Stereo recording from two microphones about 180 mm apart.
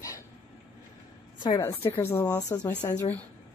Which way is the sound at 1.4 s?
15° left (ahead or behind).